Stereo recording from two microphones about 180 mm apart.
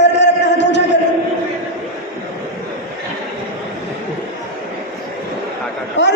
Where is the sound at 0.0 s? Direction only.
70° left (ahead or behind).